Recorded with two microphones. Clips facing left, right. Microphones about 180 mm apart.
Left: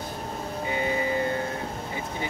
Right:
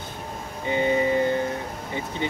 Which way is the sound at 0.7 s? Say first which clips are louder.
Right 6 dB; 25° right (ahead or behind).